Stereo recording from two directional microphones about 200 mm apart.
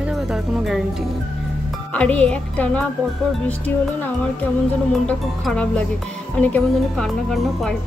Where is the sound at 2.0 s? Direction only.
5° left (ahead or behind).